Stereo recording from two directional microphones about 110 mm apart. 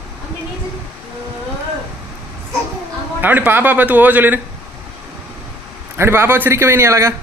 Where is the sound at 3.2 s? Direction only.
15° right (ahead or behind).